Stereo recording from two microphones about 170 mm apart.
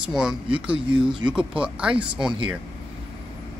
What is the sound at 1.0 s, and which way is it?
Speech, 30° right (ahead or behind).